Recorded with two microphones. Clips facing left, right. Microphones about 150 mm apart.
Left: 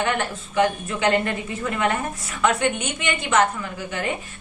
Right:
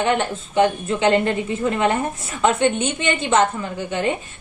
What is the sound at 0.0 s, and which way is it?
A woman's voice, 25° right (ahead or behind).